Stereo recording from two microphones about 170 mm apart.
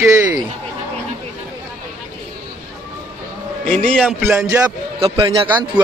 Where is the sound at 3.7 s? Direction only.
5° left (ahead or behind).